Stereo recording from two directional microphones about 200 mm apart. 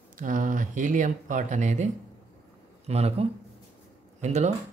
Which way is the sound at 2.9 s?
30° right (ahead or behind).